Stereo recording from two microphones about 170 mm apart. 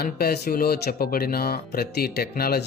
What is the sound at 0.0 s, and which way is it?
Speech, 65° left (ahead or behind).